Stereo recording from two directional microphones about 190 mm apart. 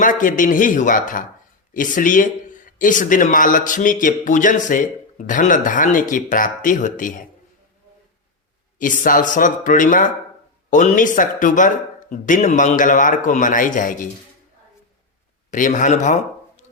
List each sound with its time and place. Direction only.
0.0 s a man's voice: 45° left (ahead or behind)
8.8 s a man's voice: 45° left (ahead or behind)
15.4 s speech: 40° left (ahead or behind)